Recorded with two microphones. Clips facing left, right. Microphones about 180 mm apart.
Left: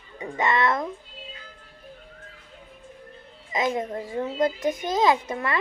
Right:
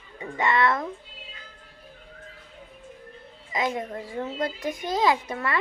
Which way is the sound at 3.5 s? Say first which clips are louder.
Left 2 dB; 20° left (ahead or behind).